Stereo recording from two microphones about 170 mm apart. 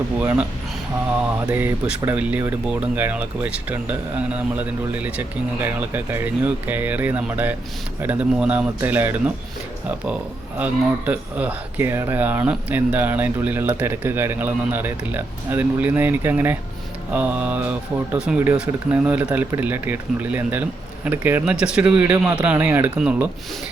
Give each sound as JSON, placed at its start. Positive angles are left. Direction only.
{"t": 0.2, "sound": "speech", "side_deg": -10}
{"t": 10.6, "sound": "speech", "side_deg": -10}
{"t": 22.1, "sound": "speech", "side_deg": -20}